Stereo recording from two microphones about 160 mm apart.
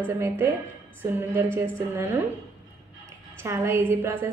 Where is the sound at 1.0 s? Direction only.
15° right (ahead or behind).